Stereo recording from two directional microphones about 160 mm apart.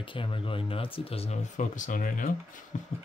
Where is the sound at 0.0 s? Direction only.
30° left (ahead or behind).